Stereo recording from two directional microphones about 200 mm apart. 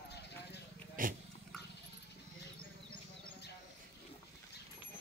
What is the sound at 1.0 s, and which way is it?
Dog, 45° right (ahead or behind).